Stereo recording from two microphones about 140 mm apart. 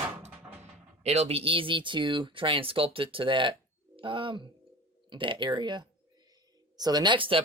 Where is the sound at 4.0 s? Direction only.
40° right (ahead or behind).